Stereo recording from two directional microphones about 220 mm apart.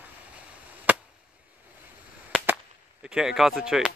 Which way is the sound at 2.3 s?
10° right (ahead or behind).